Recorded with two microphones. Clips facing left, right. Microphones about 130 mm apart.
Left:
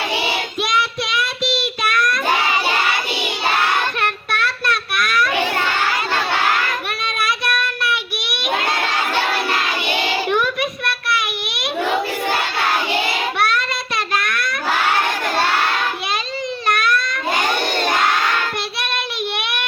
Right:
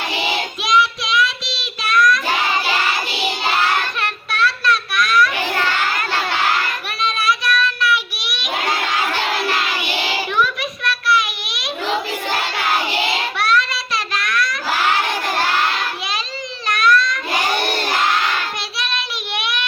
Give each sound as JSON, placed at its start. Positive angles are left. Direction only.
{"t": 0.6, "sound": "child singing", "side_deg": 60}
{"t": 4.0, "sound": "child singing", "side_deg": 55}
{"t": 7.0, "sound": "child singing", "side_deg": 55}
{"t": 10.2, "sound": "child singing", "side_deg": 55}
{"t": 11.1, "sound": "a sound", "side_deg": 55}
{"t": 13.4, "sound": "a sound", "side_deg": 55}
{"t": 16.6, "sound": "baby cry", "side_deg": 55}
{"t": 18.8, "sound": "child singing", "side_deg": 55}